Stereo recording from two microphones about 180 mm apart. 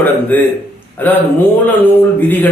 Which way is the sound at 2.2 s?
10° left (ahead or behind).